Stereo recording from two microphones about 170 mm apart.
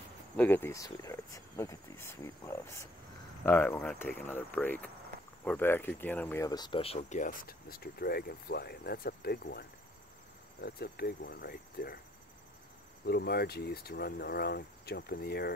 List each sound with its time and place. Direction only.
0.4 s speech: 10° left (ahead or behind); by 12.0 s 65° left (ahead or behind)
13.0 s speech: 70° left (ahead or behind)